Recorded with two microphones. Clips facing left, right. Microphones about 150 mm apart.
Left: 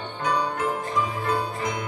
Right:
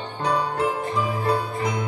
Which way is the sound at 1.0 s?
35° right (ahead or behind).